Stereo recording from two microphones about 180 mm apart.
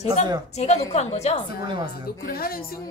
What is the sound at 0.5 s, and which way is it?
Speech, 35° left (ahead or behind).